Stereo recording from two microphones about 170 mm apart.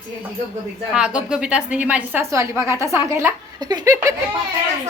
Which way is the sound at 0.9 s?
5° right (ahead or behind).